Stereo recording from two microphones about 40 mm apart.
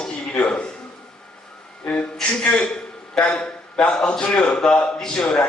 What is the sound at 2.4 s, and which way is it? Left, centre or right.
A man's voice, left.